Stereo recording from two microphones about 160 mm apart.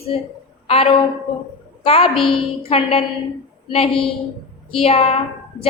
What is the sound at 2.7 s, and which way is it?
A woman's voice, 40° left (ahead or behind).